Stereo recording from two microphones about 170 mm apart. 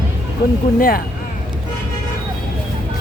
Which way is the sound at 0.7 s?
60° left (ahead or behind).